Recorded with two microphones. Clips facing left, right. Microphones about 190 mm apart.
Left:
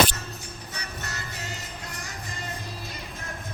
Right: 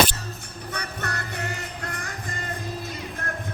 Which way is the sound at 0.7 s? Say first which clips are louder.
Right 8 dB; 60° right (ahead or behind).